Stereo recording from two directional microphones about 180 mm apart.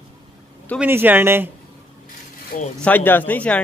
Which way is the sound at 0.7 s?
10° right (ahead or behind).